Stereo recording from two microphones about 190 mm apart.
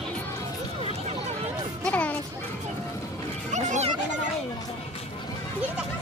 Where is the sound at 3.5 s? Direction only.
40° right (ahead or behind).